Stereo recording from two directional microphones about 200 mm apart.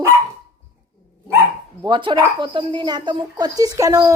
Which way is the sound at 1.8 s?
25° right (ahead or behind).